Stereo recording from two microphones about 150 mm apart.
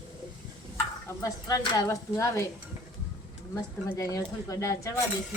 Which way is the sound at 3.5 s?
20° left (ahead or behind).